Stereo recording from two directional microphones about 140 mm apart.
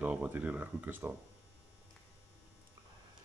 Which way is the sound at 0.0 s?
10° right (ahead or behind).